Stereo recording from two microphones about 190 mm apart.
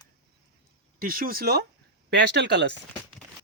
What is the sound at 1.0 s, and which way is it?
Speech, 50° right (ahead or behind).